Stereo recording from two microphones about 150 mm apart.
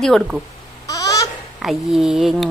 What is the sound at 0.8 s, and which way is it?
Babbling, 25° left (ahead or behind).